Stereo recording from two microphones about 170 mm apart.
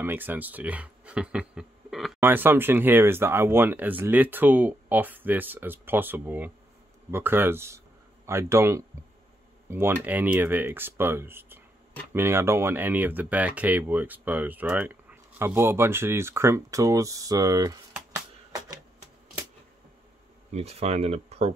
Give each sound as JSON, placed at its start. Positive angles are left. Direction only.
{"t": 0.0, "sound": "speech", "side_deg": -10}
{"t": 2.1, "sound": "speech", "side_deg": -10}
{"t": 18.1, "sound": "music", "side_deg": -20}
{"t": 20.5, "sound": "speech", "side_deg": -40}